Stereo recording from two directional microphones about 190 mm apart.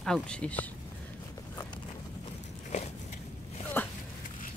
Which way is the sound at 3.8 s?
10° left (ahead or behind).